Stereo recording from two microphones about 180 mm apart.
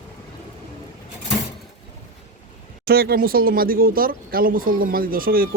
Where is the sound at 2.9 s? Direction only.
60° right (ahead or behind).